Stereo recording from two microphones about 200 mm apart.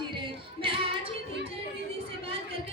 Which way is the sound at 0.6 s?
25° right (ahead or behind).